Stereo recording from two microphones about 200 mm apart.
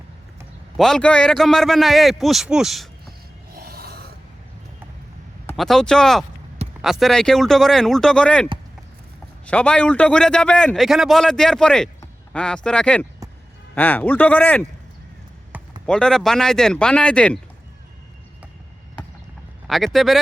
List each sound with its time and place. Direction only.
0.8 s a man's voice: 5° left (ahead or behind)
3.5 s a sound: 50° right (ahead or behind)
5.5 s a man's voice: centre (ahead or behind)
9.5 s a man's voice: 5° left (ahead or behind)
15.5 s a sound: 10° right (ahead or behind)
15.9 s a man's voice: 5° left (ahead or behind)
19.6 s a man's voice: centre (ahead or behind)